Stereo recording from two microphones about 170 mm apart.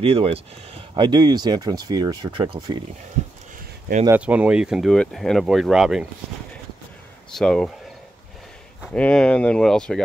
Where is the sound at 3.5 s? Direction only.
50° right (ahead or behind).